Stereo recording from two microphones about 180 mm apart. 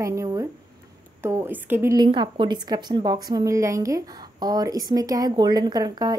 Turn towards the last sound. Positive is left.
turn(degrees=-20)  # may be behind; listen again after turning